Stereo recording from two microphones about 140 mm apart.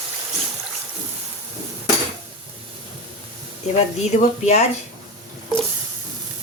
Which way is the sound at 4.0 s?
55° left (ahead or behind).